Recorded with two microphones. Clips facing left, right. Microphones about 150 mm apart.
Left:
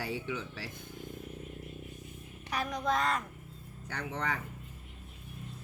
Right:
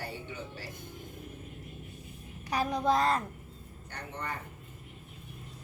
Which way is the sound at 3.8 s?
90° left.